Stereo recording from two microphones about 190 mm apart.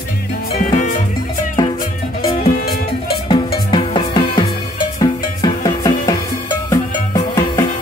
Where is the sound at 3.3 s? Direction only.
25° left (ahead or behind).